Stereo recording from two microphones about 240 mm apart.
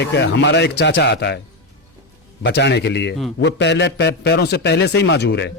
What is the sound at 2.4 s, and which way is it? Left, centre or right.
A man's voice, left.